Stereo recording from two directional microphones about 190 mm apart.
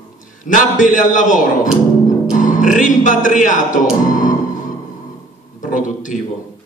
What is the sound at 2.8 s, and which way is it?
Speech, 45° left (ahead or behind).